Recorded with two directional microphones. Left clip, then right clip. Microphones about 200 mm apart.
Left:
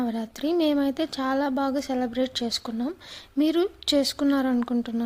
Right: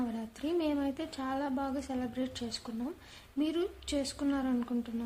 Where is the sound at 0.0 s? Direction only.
35° left (ahead or behind).